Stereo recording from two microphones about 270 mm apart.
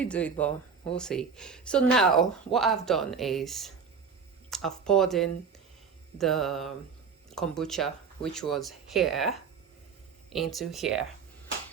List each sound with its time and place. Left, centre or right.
0.0 s speech: centre